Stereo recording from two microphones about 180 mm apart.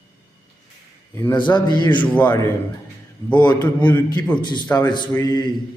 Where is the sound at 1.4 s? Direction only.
25° left (ahead or behind).